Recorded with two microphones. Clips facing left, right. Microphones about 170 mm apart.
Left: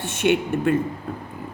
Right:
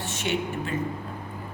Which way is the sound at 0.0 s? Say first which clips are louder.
Left 7 dB; 55° left (ahead or behind).